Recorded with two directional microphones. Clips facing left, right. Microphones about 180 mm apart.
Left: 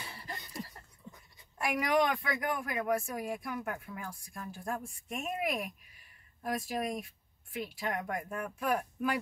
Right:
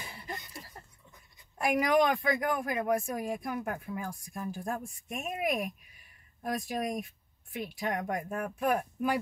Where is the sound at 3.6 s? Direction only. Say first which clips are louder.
Right 4 dB; 35° right (ahead or behind).